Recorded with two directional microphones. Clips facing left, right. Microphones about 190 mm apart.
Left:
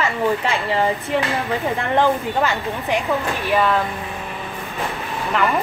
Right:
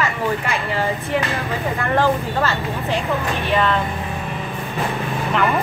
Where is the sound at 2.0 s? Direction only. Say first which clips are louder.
Left 1 dB; 15° left (ahead or behind).